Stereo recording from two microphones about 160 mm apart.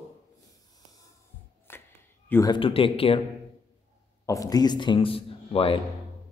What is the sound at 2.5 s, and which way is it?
Speech, 35° left (ahead or behind).